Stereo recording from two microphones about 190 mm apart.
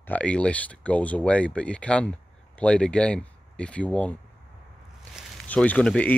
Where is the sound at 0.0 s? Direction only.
10° left (ahead or behind).